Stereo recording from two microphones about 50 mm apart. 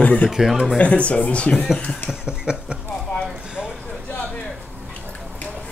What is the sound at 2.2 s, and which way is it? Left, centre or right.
Speech, centre.